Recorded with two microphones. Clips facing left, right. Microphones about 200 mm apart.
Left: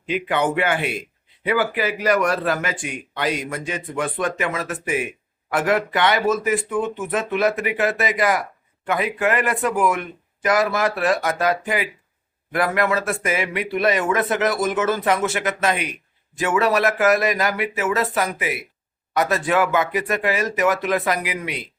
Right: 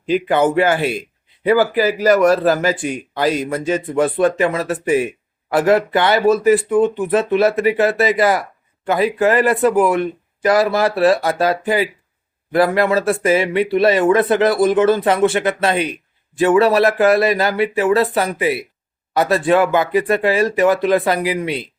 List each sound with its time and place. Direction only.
0.1 s speech: 35° right (ahead or behind)